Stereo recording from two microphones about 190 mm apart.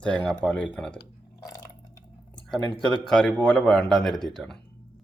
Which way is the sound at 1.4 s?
15° left (ahead or behind).